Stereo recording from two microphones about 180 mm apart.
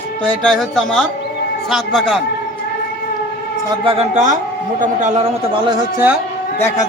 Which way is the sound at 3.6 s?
30° right (ahead or behind).